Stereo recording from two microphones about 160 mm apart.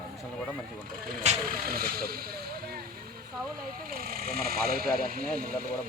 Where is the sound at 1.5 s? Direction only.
70° right (ahead or behind).